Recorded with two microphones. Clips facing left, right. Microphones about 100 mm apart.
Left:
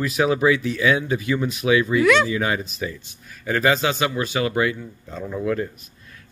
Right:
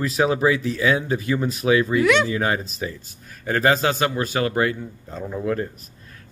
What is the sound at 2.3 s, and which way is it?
Speech, 40° right (ahead or behind).